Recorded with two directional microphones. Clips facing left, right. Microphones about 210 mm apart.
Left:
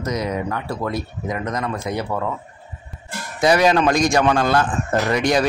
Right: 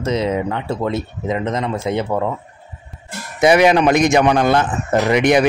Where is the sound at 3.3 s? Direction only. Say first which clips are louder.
Right 4 dB; 20° right (ahead or behind).